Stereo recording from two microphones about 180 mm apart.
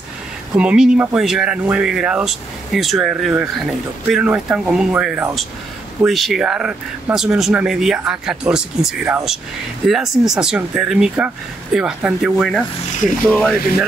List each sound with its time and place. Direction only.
0.6 s speech: 5° right (ahead or behind)
13.2 s rub: 5° left (ahead or behind)